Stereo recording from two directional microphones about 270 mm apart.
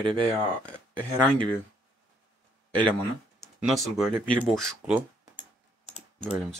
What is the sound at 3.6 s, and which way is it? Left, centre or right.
Speech, centre.